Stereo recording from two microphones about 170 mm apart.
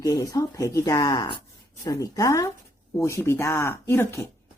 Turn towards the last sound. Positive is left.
turn(degrees=15)  # may be behind; listen again after turning